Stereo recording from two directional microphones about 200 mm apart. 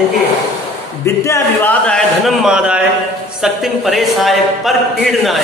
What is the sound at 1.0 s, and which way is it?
A man's voice, 15° left (ahead or behind).